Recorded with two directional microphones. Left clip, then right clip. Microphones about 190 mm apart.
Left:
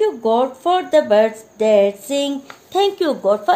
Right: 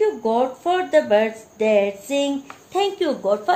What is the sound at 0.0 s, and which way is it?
A woman's voice, 50° left (ahead or behind).